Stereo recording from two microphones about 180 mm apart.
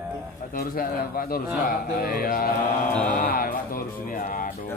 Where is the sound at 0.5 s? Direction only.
50° left (ahead or behind).